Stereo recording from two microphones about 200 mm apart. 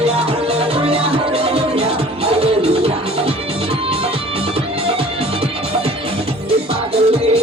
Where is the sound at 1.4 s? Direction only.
30° right (ahead or behind).